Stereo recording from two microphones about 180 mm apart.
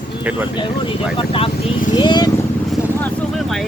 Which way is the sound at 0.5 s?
25° left (ahead or behind).